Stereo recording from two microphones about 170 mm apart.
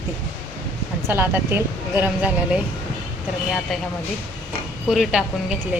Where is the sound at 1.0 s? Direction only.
15° right (ahead or behind).